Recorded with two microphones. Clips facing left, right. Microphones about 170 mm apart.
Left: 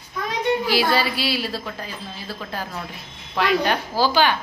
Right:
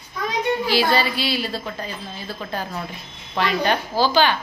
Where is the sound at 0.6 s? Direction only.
5° left (ahead or behind).